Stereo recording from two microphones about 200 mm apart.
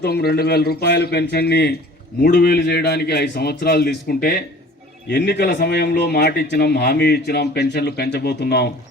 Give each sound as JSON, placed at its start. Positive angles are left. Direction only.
{"t": 0.0, "sound": "a man's voice", "side_deg": 55}